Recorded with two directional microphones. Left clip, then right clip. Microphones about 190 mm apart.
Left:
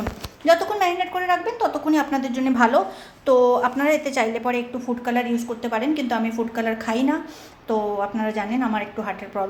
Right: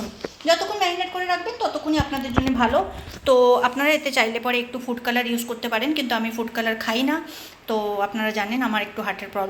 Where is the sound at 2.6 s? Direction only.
20° left (ahead or behind).